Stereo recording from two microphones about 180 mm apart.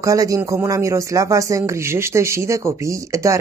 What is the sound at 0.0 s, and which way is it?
Speech, 20° right (ahead or behind).